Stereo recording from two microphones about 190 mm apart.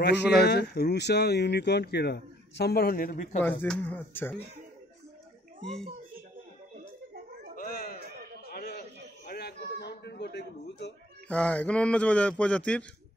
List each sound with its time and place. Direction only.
0.0 s speech: 60° left (ahead or behind)
3.6 s speech: 5° left (ahead or behind)
7.5 s a sound: 50° left (ahead or behind)
11.2 s speech: 5° left (ahead or behind)